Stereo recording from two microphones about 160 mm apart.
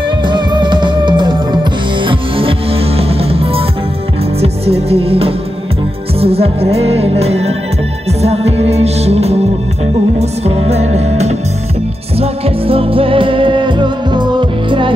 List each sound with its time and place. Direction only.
0.3 s music: 30° right (ahead or behind)